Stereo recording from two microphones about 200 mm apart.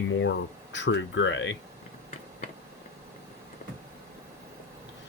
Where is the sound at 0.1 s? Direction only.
70° left (ahead or behind).